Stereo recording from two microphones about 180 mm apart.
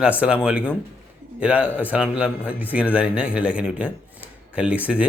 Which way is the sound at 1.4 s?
5° right (ahead or behind).